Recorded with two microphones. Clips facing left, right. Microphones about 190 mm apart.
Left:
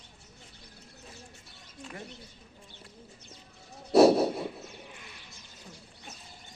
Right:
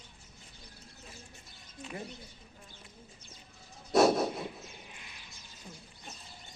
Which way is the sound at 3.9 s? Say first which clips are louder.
Left 5 dB; 35° left (ahead or behind).